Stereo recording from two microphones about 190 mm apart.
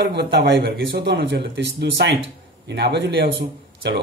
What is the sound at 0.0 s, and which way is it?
Speech, 60° right (ahead or behind).